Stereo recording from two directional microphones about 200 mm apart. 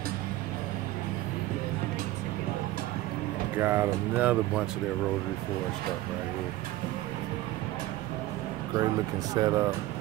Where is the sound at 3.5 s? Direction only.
10° right (ahead or behind).